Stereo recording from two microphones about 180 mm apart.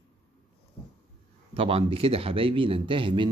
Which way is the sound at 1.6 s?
30° right (ahead or behind).